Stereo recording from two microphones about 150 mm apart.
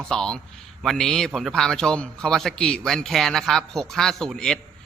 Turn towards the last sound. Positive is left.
turn(degrees=5)  # may be behind; listen again after turning